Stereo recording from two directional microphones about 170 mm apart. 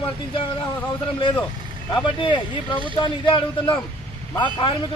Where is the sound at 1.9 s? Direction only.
30° left (ahead or behind).